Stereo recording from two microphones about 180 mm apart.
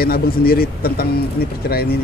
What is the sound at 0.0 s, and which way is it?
A man's voice, 55° left (ahead or behind).